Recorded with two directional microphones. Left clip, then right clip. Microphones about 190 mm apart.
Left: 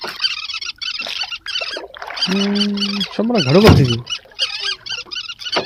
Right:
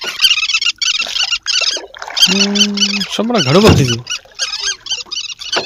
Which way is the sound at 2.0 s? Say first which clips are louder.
Right 9 dB; 30° right (ahead or behind).